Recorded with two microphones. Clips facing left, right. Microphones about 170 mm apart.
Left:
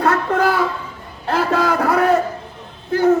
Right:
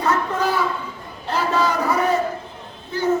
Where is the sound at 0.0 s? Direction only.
60° left (ahead or behind).